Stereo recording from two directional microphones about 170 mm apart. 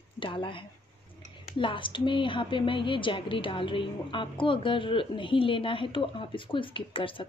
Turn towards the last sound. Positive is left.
turn(degrees=30)  # may be behind; listen again after turning